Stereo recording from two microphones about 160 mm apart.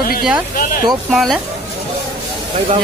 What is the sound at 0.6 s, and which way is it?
Speech, 60° left (ahead or behind).